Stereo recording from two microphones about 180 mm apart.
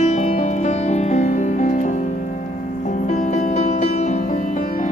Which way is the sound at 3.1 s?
45° left (ahead or behind).